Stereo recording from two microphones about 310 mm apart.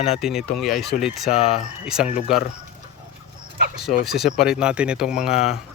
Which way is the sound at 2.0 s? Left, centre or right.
Left.